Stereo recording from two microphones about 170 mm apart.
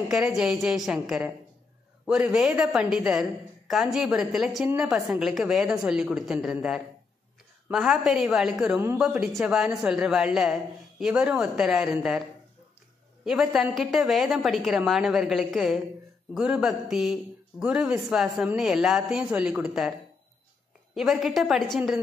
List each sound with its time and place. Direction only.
0.1 s a woman's voice: 5° right (ahead or behind)
9.0 s speech: centre (ahead or behind)
13.2 s speech: centre (ahead or behind)
20.9 s speech: centre (ahead or behind)